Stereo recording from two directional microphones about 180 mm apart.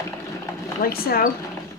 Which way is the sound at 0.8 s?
55° left (ahead or behind).